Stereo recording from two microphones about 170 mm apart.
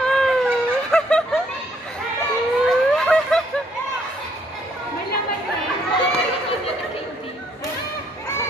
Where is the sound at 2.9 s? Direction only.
5° left (ahead or behind).